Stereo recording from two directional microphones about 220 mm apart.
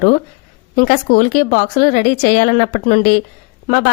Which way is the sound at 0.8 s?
40° left (ahead or behind).